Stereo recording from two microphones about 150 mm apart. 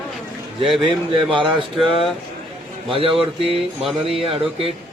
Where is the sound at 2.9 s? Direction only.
35° right (ahead or behind).